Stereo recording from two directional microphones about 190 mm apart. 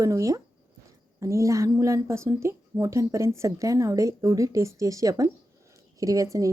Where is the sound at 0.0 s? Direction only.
15° right (ahead or behind).